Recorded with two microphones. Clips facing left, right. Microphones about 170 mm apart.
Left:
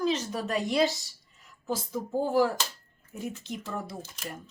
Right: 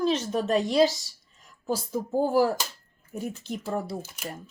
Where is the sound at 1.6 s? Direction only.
40° right (ahead or behind).